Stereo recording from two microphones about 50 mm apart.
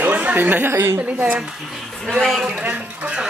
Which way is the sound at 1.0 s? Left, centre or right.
Right.